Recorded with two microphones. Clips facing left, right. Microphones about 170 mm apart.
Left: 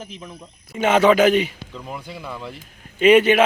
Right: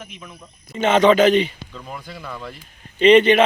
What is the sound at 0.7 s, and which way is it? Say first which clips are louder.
A man's voice: right 1 dB; 10° left (ahead or behind).